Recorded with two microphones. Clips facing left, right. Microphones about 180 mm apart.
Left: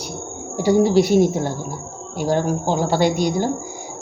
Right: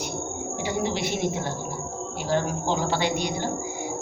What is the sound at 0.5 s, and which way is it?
Speech, 40° left (ahead or behind).